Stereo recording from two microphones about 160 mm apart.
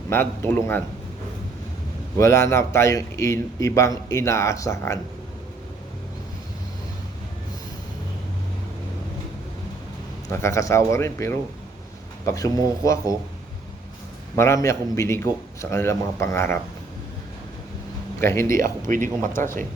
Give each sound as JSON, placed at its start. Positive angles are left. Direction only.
{"t": 0.1, "sound": "a man's voice", "side_deg": 15}
{"t": 2.1, "sound": "speech", "side_deg": 20}
{"t": 10.2, "sound": "speech", "side_deg": 20}
{"t": 14.3, "sound": "a man's voice", "side_deg": 20}
{"t": 18.2, "sound": "a man's voice", "side_deg": 15}
{"t": 18.5, "sound": "speech", "side_deg": -60}
{"t": 19.2, "sound": "a man's voice", "side_deg": 15}